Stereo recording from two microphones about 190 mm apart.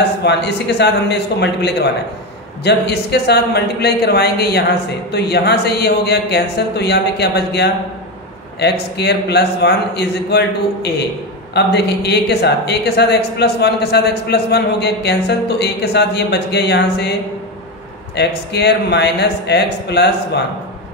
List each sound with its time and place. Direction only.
0.2 s a woman's voice: 60° left (ahead or behind)
18.1 s a woman's voice: 60° left (ahead or behind)